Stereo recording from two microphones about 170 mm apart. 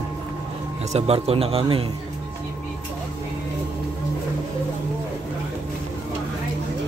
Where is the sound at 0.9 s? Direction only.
35° right (ahead or behind).